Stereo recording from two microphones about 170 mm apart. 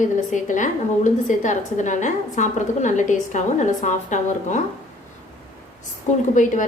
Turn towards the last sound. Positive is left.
turn(degrees=45)  # may be behind; listen again after turning